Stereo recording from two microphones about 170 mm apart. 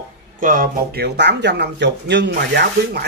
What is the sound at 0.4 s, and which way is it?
Speech, 55° right (ahead or behind).